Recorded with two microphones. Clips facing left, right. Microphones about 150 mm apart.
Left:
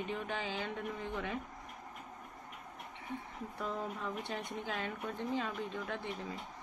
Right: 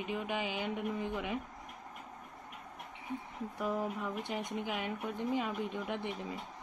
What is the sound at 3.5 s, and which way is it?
Speech, 10° right (ahead or behind).